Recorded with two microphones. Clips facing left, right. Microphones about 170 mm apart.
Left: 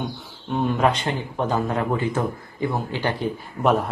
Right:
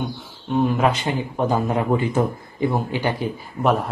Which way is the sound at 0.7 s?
5° right (ahead or behind).